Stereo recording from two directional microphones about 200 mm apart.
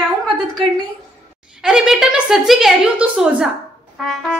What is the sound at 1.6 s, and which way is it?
A woman's voice, 5° right (ahead or behind).